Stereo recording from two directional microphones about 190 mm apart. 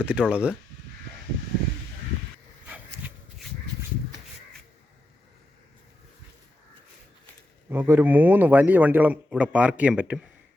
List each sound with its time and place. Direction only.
0.0 s speech: 5° right (ahead or behind)
2.6 s rub: 5° right (ahead or behind)
7.7 s a man's voice: 10° right (ahead or behind)